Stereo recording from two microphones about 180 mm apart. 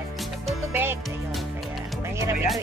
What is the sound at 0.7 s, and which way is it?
Music, 15° right (ahead or behind).